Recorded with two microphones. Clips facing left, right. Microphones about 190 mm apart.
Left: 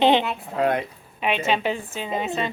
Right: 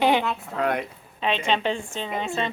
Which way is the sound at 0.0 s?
20° left (ahead or behind).